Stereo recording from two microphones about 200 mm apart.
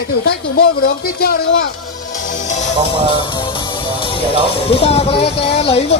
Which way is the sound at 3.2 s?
25° left (ahead or behind).